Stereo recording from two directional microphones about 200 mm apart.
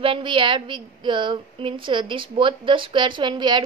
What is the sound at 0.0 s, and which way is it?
A woman's voice, 25° right (ahead or behind).